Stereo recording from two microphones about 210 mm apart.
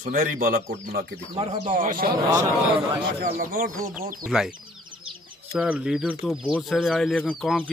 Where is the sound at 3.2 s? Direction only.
45° right (ahead or behind).